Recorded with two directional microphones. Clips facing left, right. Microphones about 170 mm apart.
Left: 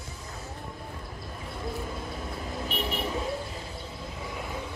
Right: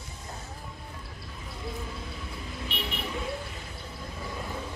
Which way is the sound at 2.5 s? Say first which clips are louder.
Left 4 dB; 40° left (ahead or behind).